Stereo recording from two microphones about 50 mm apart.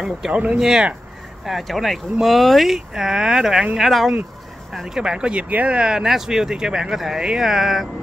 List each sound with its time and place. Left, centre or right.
0.3 s speech: right
0.6 s speech: centre
2.9 s speech: centre
5.4 s speech: right
5.8 s speech: centre